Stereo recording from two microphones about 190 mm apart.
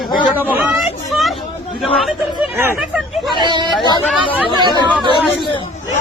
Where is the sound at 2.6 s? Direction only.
10° right (ahead or behind).